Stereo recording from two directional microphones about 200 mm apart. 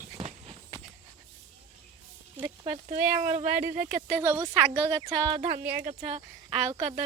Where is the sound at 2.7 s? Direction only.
35° right (ahead or behind).